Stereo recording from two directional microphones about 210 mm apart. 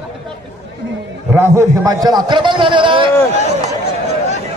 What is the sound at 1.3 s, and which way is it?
A man's voice, 10° right (ahead or behind).